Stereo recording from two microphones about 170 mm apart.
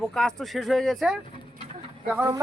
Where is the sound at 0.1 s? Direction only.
5° left (ahead or behind).